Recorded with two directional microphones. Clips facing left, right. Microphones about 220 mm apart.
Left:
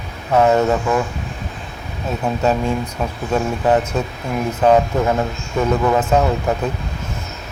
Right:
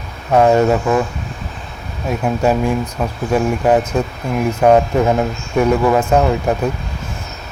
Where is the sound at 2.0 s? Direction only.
10° right (ahead or behind).